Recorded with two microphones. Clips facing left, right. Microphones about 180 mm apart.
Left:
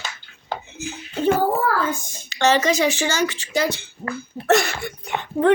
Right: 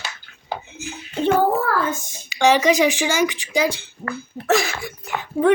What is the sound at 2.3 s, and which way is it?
Speech, 10° right (ahead or behind).